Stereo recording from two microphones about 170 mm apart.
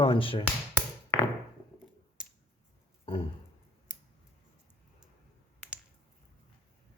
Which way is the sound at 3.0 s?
30° left (ahead or behind).